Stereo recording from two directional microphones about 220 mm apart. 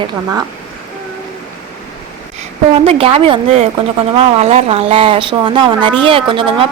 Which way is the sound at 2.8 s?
25° right (ahead or behind).